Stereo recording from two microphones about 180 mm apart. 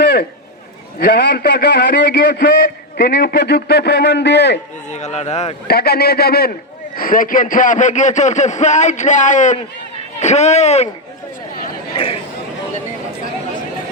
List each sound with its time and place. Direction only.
0.9 s a man's voice: 70° left (ahead or behind)
4.9 s speech: 40° left (ahead or behind)
5.6 s a man's voice: 65° left (ahead or behind)
6.9 s speech: 50° left (ahead or behind)
11.9 s speech: 30° left (ahead or behind)